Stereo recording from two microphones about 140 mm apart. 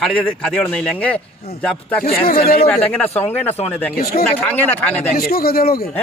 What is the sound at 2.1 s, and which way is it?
Speech, 90° left.